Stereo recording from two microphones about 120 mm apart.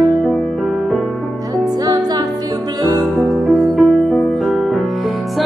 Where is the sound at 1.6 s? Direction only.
30° right (ahead or behind).